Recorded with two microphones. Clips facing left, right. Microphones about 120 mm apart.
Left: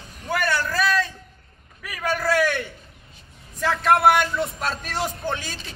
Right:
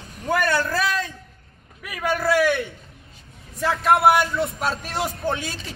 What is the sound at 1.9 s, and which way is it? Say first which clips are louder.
Speech: right 2 dB; 10° right (ahead or behind).